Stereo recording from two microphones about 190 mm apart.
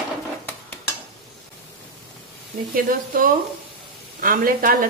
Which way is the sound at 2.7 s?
50° right (ahead or behind).